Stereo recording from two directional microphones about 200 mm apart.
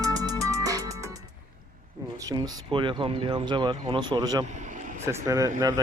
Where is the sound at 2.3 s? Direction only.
20° right (ahead or behind).